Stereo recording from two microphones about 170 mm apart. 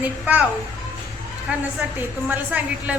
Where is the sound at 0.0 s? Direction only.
10° right (ahead or behind).